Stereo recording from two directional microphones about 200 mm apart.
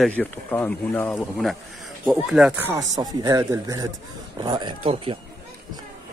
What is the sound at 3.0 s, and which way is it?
Speech, 20° right (ahead or behind).